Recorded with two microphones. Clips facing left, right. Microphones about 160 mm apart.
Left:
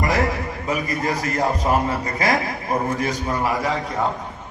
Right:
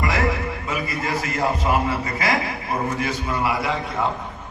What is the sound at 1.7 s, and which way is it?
A man's voice, 40° left (ahead or behind).